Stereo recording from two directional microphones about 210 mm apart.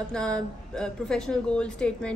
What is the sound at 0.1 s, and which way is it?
Speech, 5° left (ahead or behind).